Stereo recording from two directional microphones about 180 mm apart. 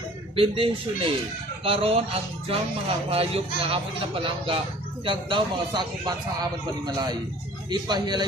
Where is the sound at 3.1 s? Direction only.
35° right (ahead or behind).